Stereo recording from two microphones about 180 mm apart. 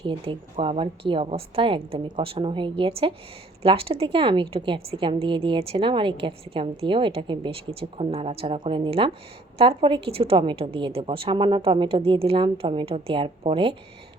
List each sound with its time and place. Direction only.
0.0 s a woman's voice: 30° right (ahead or behind)